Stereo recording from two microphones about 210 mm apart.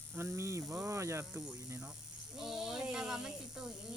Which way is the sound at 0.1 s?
10° right (ahead or behind).